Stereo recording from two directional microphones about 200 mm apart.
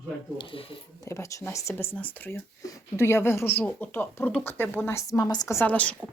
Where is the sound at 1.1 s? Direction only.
15° left (ahead or behind).